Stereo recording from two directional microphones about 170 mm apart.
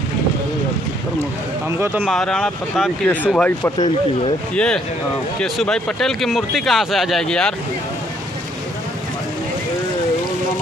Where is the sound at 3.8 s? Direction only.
30° left (ahead or behind).